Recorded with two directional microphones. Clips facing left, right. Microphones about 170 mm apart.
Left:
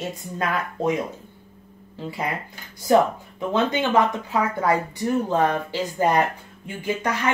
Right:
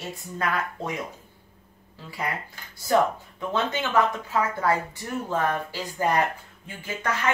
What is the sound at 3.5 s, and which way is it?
Speech, 20° left (ahead or behind).